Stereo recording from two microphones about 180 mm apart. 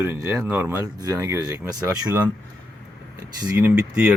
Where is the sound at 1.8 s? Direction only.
10° right (ahead or behind).